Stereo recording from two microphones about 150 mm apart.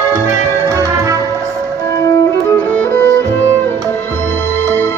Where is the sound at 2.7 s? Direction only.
15° left (ahead or behind).